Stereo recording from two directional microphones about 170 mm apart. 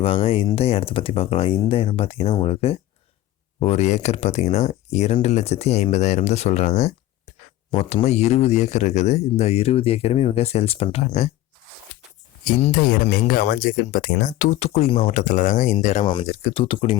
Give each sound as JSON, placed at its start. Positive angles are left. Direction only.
{"t": 0.0, "sound": "speech", "side_deg": 35}
{"t": 12.7, "sound": "speech", "side_deg": 60}
{"t": 15.1, "sound": "speech", "side_deg": 50}